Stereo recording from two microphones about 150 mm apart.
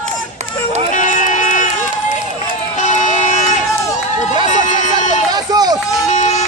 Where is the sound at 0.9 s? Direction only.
55° left (ahead or behind).